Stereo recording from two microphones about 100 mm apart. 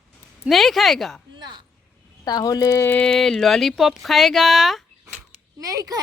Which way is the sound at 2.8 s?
15° left (ahead or behind).